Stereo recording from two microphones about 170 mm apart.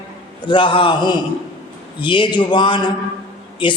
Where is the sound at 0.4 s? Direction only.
30° left (ahead or behind).